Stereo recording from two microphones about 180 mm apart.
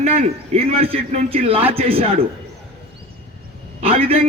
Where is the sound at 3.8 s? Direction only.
35° right (ahead or behind).